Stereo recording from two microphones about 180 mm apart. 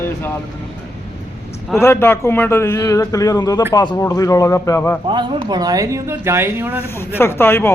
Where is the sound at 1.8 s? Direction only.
15° left (ahead or behind).